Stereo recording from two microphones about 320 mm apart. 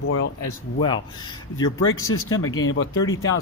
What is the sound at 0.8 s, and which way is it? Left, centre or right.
Speech, centre.